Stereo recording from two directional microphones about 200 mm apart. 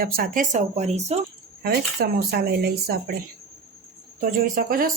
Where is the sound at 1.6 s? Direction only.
50° right (ahead or behind).